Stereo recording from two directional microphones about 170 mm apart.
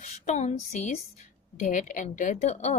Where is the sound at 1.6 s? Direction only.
50° left (ahead or behind).